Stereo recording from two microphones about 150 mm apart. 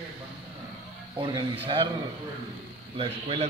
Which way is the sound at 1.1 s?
35° right (ahead or behind).